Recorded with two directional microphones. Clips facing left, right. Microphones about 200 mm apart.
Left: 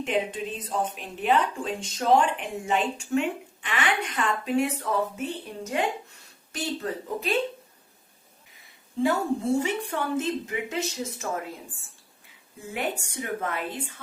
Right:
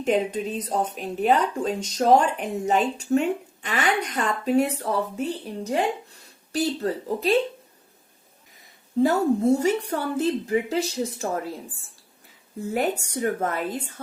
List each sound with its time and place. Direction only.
0.0 s speech: 40° right (ahead or behind)
9.0 s speech: 40° right (ahead or behind)
12.5 s speech: 40° right (ahead or behind)